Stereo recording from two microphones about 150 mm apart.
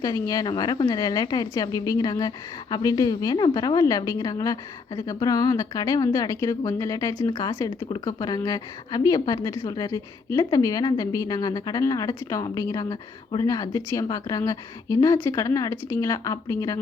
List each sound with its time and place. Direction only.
0.0 s a woman's voice: 25° left (ahead or behind)